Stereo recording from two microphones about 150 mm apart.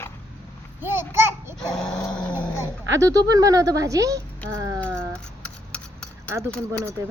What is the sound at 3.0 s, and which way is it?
Speech, 25° right (ahead or behind).